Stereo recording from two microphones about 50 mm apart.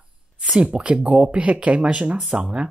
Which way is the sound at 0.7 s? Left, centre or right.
Right.